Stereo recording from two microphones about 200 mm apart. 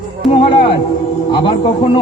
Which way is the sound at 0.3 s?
25° left (ahead or behind).